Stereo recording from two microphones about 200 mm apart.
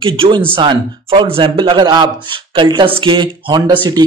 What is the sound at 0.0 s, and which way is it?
Speech, 25° right (ahead or behind).